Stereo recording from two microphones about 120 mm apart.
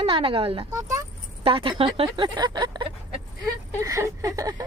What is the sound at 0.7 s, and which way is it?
Speech, 25° right (ahead or behind).